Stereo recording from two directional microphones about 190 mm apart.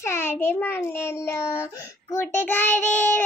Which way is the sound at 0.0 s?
15° left (ahead or behind).